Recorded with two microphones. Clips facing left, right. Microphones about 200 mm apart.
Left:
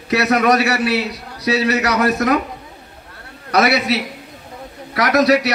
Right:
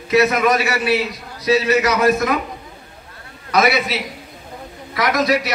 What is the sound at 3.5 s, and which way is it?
A man's voice, 70° left (ahead or behind).